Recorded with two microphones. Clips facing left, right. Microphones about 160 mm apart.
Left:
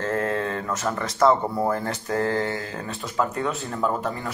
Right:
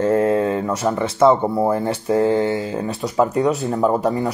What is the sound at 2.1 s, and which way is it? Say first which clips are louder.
Speech: right 8 dB; 5° right (ahead or behind).